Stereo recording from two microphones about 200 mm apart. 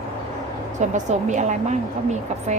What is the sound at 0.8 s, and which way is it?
Speech, 35° right (ahead or behind).